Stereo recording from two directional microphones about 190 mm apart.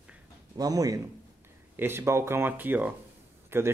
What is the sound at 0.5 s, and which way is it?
A man's voice, 20° right (ahead or behind).